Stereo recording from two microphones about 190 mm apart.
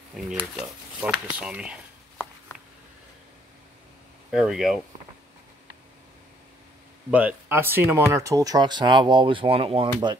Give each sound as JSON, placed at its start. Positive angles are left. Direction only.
{"t": 0.3, "sound": "speech", "side_deg": -5}
{"t": 4.3, "sound": "speech", "side_deg": 0}
{"t": 7.1, "sound": "speech", "side_deg": -10}